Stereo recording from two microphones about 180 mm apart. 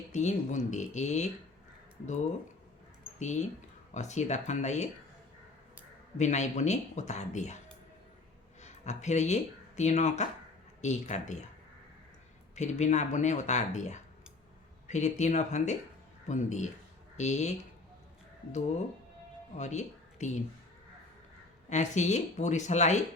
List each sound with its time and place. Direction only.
0.1 s speech: 40° left (ahead or behind)
3.2 s speech: 40° left (ahead or behind)
6.1 s speech: 40° left (ahead or behind)
8.6 s speech: 40° left (ahead or behind)
12.5 s speech: 40° left (ahead or behind)
19.5 s speech: 40° left (ahead or behind)
21.7 s speech: 40° left (ahead or behind)